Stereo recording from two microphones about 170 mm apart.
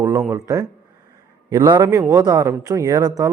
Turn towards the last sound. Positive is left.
turn(degrees=-20)  # may be behind; listen again after turning